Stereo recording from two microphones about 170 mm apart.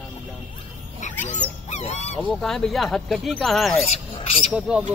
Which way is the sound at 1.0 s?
45° left (ahead or behind).